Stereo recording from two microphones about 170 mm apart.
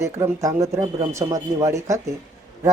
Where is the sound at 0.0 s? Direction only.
15° right (ahead or behind).